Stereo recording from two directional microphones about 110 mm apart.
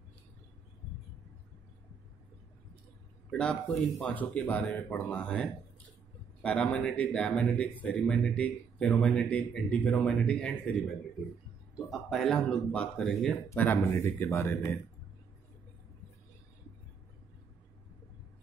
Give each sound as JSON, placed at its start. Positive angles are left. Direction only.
{"t": 3.3, "sound": "speech", "side_deg": 10}
{"t": 11.9, "sound": "speech", "side_deg": 5}
{"t": 13.6, "sound": "speech", "side_deg": 15}